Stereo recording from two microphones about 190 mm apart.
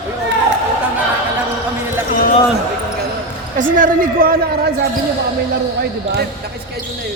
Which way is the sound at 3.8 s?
50° right (ahead or behind).